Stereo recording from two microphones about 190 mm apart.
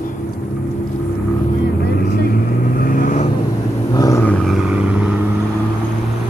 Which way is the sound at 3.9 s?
15° left (ahead or behind).